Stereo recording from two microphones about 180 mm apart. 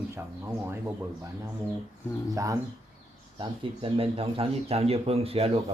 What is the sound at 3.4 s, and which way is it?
A man's voice, 30° right (ahead or behind).